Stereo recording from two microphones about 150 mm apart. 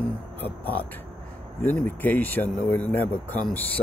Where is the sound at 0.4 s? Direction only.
10° left (ahead or behind).